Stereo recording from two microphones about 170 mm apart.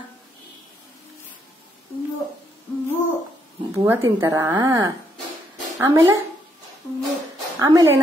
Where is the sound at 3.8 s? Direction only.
15° right (ahead or behind).